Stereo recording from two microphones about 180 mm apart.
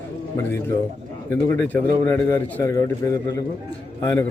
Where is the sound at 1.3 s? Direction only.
10° left (ahead or behind).